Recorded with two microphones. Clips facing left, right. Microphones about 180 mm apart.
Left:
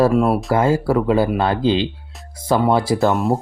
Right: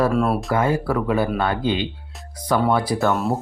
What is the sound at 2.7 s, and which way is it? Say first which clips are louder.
Speech: left 3 dB; 25° left (ahead or behind).